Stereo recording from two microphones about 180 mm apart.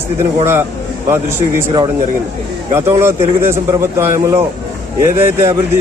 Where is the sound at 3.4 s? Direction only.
15° right (ahead or behind).